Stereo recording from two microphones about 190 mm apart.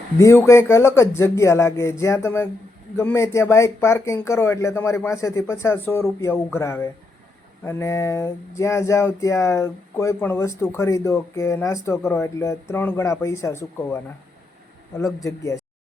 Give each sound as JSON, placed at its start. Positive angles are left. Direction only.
{"t": 0.2, "sound": "speech", "side_deg": 15}